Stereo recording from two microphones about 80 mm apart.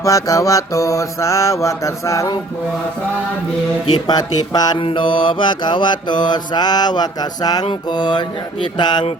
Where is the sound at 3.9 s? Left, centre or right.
Left.